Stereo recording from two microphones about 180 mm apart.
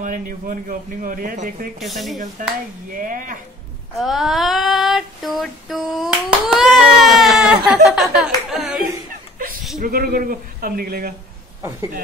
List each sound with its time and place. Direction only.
0.0 s speech: 45° right (ahead or behind)
1.8 s child singing: centre (ahead or behind)
2.4 s speech: 50° right (ahead or behind)
3.9 s child singing: centre (ahead or behind)
6.5 s baby cry: centre (ahead or behind)
7.6 s child singing: 5° right (ahead or behind)
8.5 s a sound: centre (ahead or behind)
9.8 s speech: 55° right (ahead or behind)